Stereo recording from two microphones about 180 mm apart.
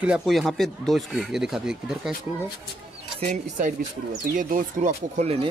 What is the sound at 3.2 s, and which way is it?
Speech, 40° right (ahead or behind).